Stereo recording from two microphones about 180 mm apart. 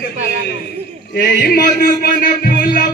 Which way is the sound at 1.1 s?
60° left (ahead or behind).